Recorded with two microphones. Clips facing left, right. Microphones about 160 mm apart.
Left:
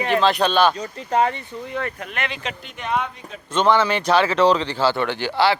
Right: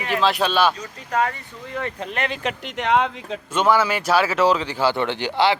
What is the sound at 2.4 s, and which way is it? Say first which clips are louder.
Speech: right 5 dB; 85° right.